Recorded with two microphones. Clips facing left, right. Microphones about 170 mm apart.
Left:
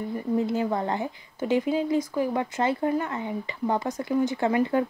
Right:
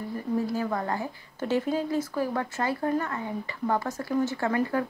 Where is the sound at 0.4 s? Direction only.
20° left (ahead or behind).